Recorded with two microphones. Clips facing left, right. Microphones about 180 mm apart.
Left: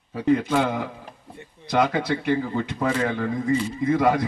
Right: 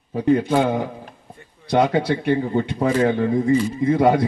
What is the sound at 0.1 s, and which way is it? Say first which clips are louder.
Speech: right 3 dB; 30° right (ahead or behind).